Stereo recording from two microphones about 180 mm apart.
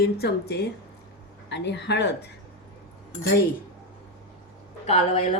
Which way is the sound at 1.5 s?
75° left (ahead or behind).